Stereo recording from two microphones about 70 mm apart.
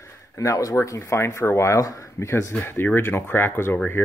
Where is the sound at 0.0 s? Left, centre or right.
Left.